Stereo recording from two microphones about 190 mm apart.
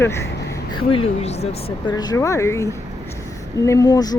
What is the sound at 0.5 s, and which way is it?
Speech, 25° left (ahead or behind).